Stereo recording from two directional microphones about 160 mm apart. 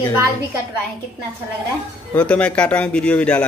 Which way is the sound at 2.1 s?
10° left (ahead or behind).